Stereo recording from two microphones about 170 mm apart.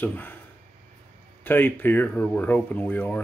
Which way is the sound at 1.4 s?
10° left (ahead or behind).